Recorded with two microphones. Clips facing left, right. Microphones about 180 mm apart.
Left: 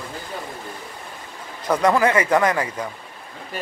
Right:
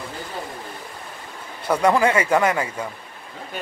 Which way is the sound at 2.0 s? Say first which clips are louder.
Left 1 dB; 30° right (ahead or behind).